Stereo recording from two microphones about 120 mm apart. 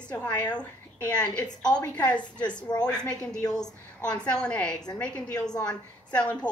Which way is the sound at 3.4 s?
30° left (ahead or behind).